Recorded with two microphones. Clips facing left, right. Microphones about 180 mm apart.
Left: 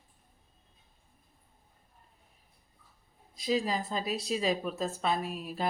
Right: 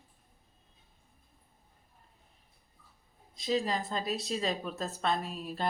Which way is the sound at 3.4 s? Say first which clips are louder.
Left 1 dB; 10° left (ahead or behind).